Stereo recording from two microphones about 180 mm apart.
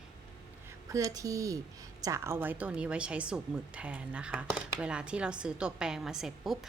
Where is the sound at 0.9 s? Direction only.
20° right (ahead or behind).